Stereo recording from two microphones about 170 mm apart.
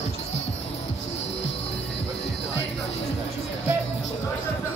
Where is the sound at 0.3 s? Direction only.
40° left (ahead or behind).